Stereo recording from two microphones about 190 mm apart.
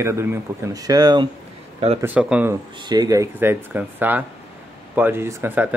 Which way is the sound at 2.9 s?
20° right (ahead or behind).